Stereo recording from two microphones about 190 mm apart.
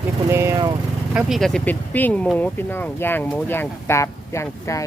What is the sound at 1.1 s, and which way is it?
Speech, centre (ahead or behind).